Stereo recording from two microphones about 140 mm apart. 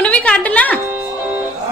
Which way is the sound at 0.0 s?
10° left (ahead or behind).